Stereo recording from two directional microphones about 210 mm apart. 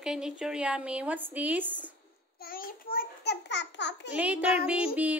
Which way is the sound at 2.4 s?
45° left (ahead or behind).